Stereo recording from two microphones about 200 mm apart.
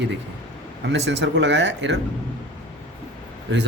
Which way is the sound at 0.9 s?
60° right (ahead or behind).